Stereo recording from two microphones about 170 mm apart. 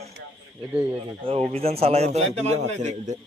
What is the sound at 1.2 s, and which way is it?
A man's voice, 35° right (ahead or behind).